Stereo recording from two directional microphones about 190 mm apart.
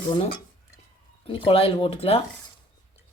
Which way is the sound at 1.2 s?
30° left (ahead or behind).